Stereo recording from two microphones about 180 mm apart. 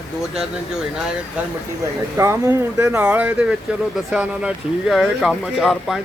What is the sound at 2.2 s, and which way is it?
Speech, 15° right (ahead or behind).